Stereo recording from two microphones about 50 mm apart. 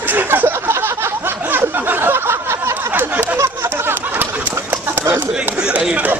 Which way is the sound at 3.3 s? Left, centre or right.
Right.